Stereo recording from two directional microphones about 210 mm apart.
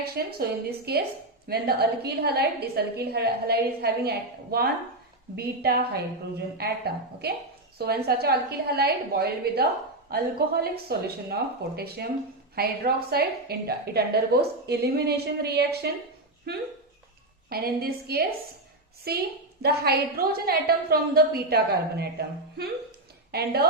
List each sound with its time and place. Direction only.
0.0 s a woman's voice: 45° right (ahead or behind)
12.5 s a woman's voice: 45° right (ahead or behind)
23.3 s a woman's voice: 50° right (ahead or behind)